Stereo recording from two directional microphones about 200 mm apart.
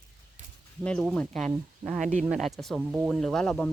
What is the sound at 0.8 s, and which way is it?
Speech, 5° left (ahead or behind).